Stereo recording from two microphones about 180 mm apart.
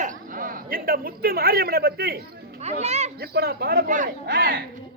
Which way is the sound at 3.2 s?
60° right (ahead or behind).